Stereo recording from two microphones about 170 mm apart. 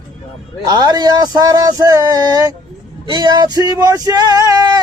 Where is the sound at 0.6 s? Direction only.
25° right (ahead or behind).